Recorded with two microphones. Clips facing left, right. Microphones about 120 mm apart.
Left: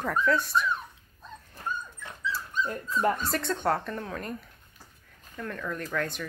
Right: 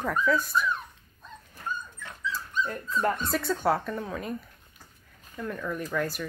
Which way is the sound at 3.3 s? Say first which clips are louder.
Right 2 dB; 5° right (ahead or behind).